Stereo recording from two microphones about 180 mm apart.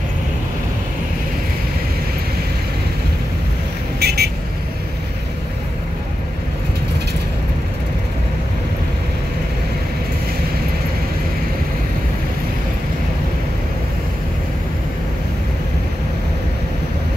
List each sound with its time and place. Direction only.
4.0 s vehicle: 60° right (ahead or behind)